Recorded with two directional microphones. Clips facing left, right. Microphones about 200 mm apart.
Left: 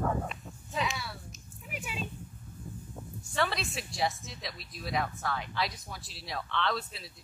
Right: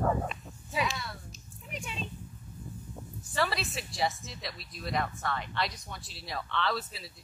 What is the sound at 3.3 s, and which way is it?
Speech, centre (ahead or behind).